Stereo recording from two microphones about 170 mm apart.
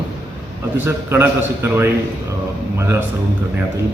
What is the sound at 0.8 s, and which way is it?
A man's voice, 15° right (ahead or behind).